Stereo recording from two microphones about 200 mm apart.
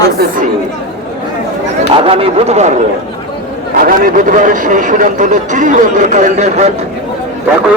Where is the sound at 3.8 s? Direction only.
45° right (ahead or behind).